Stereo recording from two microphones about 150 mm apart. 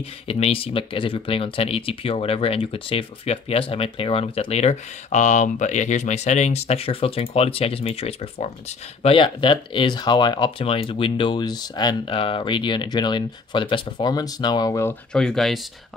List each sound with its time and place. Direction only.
0.3 s speech: 40° left (ahead or behind); by 15.0 s 20° left (ahead or behind)
15.1 s speech: 5° left (ahead or behind)